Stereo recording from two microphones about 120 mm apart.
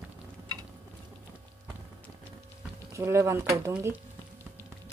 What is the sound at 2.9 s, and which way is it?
Speech, 25° right (ahead or behind).